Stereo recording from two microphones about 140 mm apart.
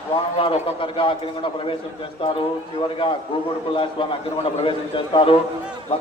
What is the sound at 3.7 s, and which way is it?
A man's voice, 40° left (ahead or behind).